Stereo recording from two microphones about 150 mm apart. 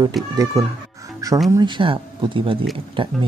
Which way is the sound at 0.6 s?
20° right (ahead or behind).